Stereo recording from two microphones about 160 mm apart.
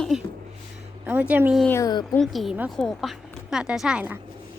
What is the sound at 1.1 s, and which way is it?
Speech, 10° right (ahead or behind).